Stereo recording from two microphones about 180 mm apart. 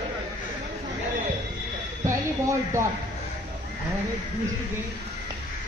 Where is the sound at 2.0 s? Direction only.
15° right (ahead or behind).